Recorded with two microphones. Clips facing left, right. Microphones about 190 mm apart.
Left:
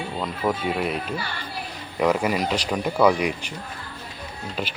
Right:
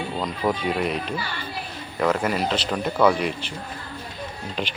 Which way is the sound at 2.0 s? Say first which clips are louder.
Left 1 dB; 10° left (ahead or behind).